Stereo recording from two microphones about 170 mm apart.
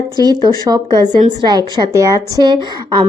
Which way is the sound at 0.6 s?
25° right (ahead or behind).